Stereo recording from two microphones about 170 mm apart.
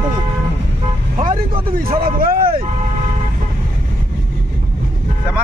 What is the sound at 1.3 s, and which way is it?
Speech, 30° right (ahead or behind).